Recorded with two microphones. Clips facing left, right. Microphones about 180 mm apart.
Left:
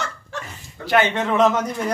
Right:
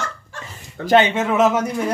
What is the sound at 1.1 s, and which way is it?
Speech, 5° right (ahead or behind).